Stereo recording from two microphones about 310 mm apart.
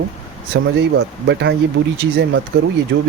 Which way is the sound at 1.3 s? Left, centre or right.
Right.